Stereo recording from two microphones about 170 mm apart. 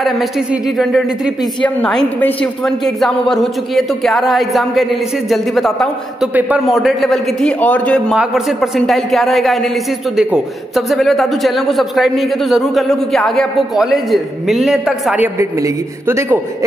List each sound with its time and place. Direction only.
0.0 s a man's voice: centre (ahead or behind)
15.3 s a man's voice: 15° right (ahead or behind)